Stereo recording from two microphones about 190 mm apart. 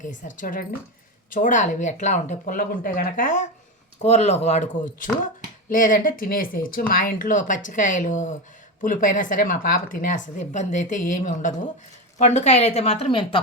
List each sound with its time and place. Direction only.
0.0 s speech: 40° left (ahead or behind)